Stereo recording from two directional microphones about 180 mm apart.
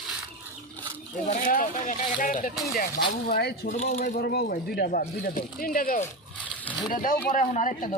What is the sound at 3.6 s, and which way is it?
Speech, 45° left (ahead or behind).